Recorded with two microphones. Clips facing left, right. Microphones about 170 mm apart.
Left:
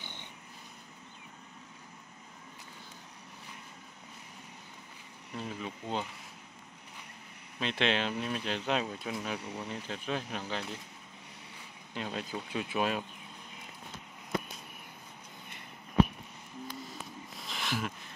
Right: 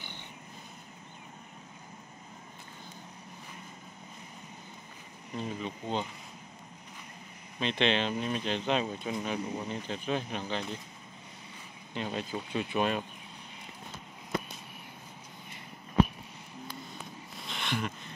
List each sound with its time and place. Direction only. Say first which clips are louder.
5.3 s speech: right 3 dB; 5° left (ahead or behind)
7.5 s speech: right 2 dB; 5° left (ahead or behind)
11.9 s speech: right 2 dB; centre (ahead or behind)
16.9 s a sound: even; centre (ahead or behind)